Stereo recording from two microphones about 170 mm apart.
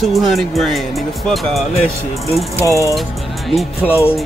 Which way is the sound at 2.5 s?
20° right (ahead or behind).